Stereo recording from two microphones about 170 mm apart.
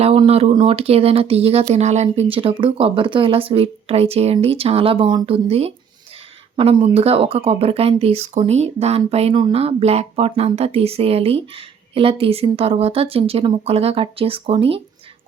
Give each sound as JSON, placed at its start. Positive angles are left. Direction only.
{"t": 0.0, "sound": "speech", "side_deg": -35}